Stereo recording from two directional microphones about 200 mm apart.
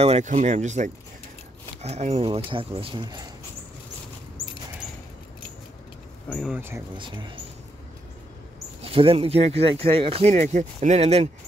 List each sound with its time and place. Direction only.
0.0 s speech: 35° right (ahead or behind)
6.2 s speech: 5° left (ahead or behind)
6.5 s speech: 10° right (ahead or behind)
7.0 s speech: 25° right (ahead or behind)
8.8 s speech: 25° right (ahead or behind)